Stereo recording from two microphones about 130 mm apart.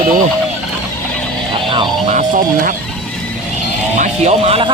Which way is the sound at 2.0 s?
80° right.